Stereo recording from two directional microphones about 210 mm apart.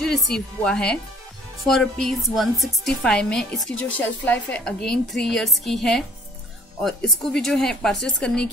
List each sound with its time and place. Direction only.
0.0 s a woman's voice: centre (ahead or behind)